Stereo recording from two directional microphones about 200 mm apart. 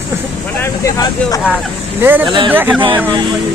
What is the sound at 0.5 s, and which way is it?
Speech, 15° left (ahead or behind).